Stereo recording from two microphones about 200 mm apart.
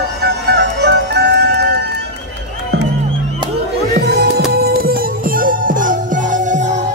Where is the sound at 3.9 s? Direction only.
50° right (ahead or behind).